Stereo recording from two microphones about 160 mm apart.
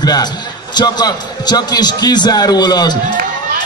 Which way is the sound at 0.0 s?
25° left (ahead or behind).